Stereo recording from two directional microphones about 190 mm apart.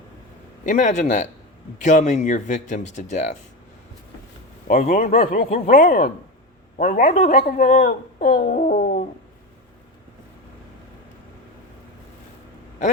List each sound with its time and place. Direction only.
0.6 s speech: 40° left (ahead or behind)
4.7 s speech: 45° left (ahead or behind)